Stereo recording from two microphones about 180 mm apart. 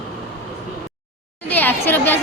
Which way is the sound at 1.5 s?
10° left (ahead or behind).